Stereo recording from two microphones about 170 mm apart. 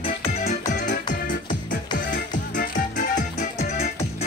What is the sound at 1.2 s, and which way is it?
Music, 50° left (ahead or behind).